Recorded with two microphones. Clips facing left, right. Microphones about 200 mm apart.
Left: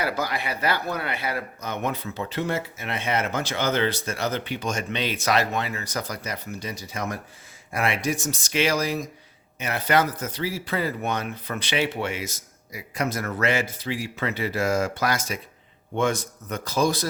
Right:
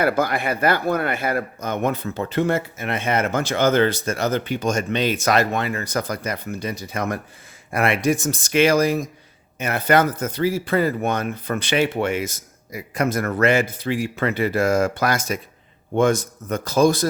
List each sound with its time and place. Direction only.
0.0 s speech: 55° right (ahead or behind)